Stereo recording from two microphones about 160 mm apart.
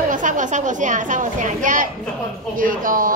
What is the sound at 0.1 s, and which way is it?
A woman's voice, 55° right (ahead or behind).